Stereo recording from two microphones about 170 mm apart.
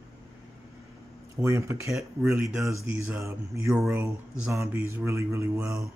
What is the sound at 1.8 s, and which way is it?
Speech, centre (ahead or behind).